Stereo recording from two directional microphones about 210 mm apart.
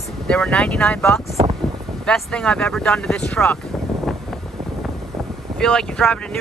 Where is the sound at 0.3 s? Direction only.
5° left (ahead or behind).